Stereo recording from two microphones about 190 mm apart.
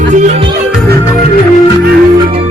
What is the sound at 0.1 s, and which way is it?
Music, 40° right (ahead or behind).